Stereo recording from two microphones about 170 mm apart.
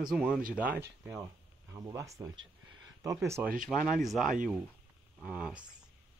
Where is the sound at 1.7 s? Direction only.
20° right (ahead or behind).